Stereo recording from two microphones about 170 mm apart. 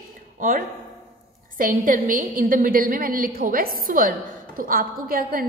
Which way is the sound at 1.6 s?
50° right (ahead or behind).